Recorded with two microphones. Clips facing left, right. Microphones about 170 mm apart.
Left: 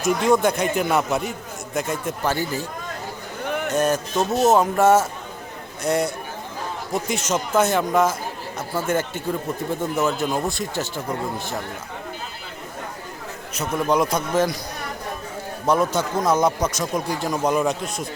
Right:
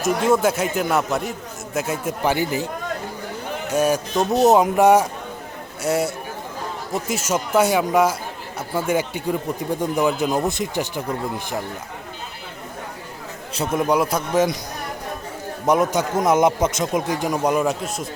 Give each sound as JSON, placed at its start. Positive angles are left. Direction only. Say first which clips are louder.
{"t": 0.0, "sound": "a man's voice", "louder": "even", "side_deg": -5}
{"t": 2.2, "sound": "a man's voice", "louder": "right 4 dB", "side_deg": -15}
{"t": 3.7, "sound": "a man's voice", "louder": "right 3 dB", "side_deg": -10}
{"t": 13.7, "sound": "a man's voice", "louder": "right 1 dB", "side_deg": -10}
{"t": 15.6, "sound": "a man's voice", "louder": "right 2 dB", "side_deg": -15}